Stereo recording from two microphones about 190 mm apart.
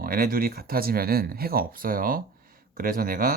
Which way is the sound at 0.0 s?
50° right (ahead or behind).